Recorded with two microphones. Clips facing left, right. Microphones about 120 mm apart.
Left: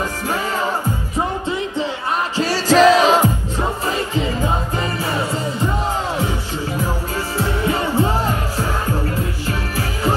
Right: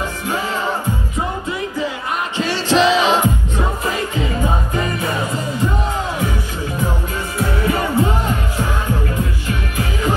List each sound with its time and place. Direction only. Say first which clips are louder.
2.3 s music: left 2 dB; 40° left (ahead or behind)
7.3 s music: right 1 dB; 25° left (ahead or behind)